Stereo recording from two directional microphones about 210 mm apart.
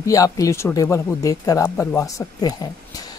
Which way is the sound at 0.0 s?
15° left (ahead or behind).